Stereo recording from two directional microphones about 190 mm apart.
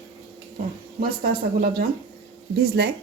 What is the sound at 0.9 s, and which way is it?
Speech, 50° right (ahead or behind).